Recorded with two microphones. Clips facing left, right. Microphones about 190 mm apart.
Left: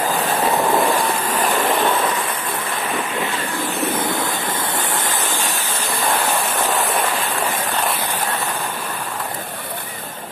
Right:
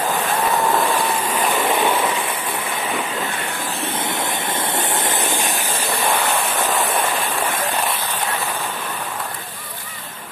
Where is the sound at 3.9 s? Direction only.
25° right (ahead or behind).